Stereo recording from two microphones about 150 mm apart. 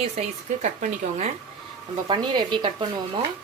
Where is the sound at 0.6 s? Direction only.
50° right (ahead or behind).